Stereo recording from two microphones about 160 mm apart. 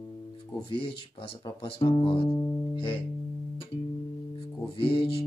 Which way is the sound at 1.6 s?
30° left (ahead or behind).